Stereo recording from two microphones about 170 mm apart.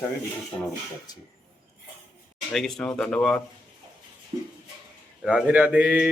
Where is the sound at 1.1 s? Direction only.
25° left (ahead or behind).